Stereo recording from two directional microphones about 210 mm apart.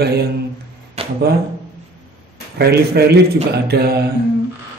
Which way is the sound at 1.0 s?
30° right (ahead or behind).